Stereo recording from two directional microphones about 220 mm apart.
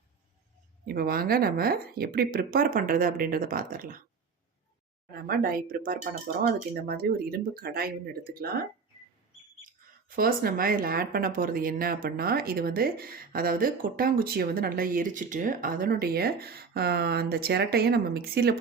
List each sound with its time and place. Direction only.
0.9 s speech: 40° right (ahead or behind)
5.1 s speech: 45° right (ahead or behind)
10.1 s speech: 40° right (ahead or behind)